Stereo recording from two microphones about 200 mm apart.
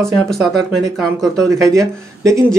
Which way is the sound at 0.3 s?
Centre (ahead or behind).